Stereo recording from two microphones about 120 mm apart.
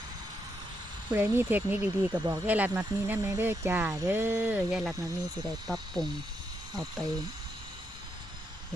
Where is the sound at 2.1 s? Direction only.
35° right (ahead or behind).